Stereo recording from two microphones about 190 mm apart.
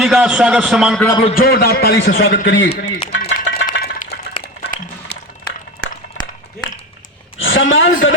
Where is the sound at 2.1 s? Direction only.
90° left.